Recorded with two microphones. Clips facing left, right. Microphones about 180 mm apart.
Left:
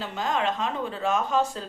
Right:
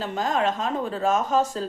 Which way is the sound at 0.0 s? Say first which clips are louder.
Right 3 dB; 45° right (ahead or behind).